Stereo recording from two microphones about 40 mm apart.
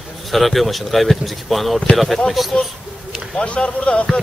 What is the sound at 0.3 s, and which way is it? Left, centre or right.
Speech, centre.